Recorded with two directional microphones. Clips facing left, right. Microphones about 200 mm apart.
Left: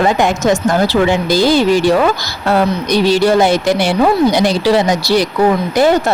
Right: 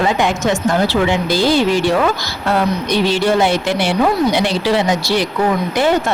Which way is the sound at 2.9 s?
40° left (ahead or behind).